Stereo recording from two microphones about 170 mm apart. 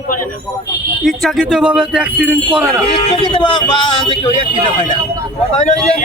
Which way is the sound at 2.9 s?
30° left (ahead or behind).